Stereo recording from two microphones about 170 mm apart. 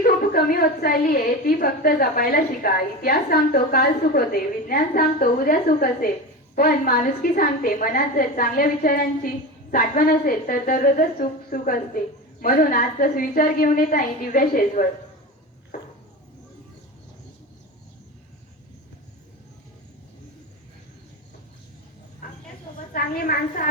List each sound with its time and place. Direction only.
0.0 s a woman's voice: 60° left (ahead or behind)
22.9 s a woman's voice: 60° left (ahead or behind)